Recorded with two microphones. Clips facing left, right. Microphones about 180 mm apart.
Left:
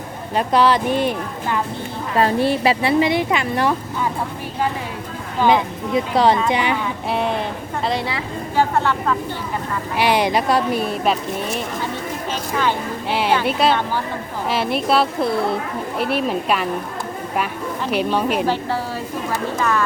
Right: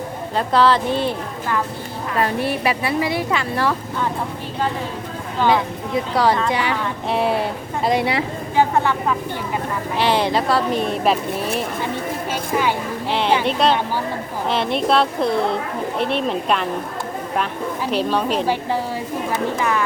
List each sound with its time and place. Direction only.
0.3 s speech: 15° left (ahead or behind)
2.1 s a woman's voice: 30° left (ahead or behind)
5.4 s a woman's voice: 20° left (ahead or behind)
6.8 s speech: centre (ahead or behind)
8.0 s a woman's voice: 20° right (ahead or behind)
10.0 s speech: 15° left (ahead or behind)
12.3 s a sound: 10° right (ahead or behind)
13.1 s speech: 5° left (ahead or behind)
17.9 s speech: 10° left (ahead or behind)
19.5 s speech: 15° right (ahead or behind)